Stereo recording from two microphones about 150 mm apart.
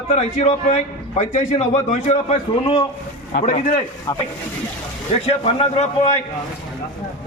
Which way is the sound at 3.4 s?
55° left (ahead or behind).